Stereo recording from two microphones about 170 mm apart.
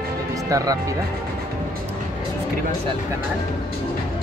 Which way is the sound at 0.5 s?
20° right (ahead or behind).